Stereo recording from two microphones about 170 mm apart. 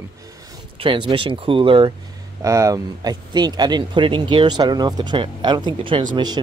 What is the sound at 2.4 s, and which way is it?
Speech, 20° right (ahead or behind).